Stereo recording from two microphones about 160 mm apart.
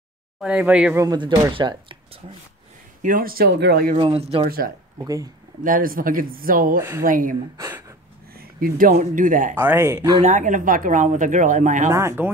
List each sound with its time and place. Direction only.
0.4 s speech: 10° right (ahead or behind)
0.9 s speech: 25° right (ahead or behind)
3.0 s speech: 60° right (ahead or behind); by 3.9 s 90° right
3.9 s speech: 40° right (ahead or behind)
5.0 s speech: 20° right (ahead or behind)
5.6 s speech: 60° right (ahead or behind)
6.8 s speech: 15° right (ahead or behind)
7.1 s speech: 55° right (ahead or behind)
7.5 s speech: 20° right (ahead or behind)
8.3 s speech: 70° right (ahead or behind)
9.6 s speech: 15° right (ahead or behind)
10.2 s speech: 50° right (ahead or behind)
11.9 s speech: 15° right (ahead or behind)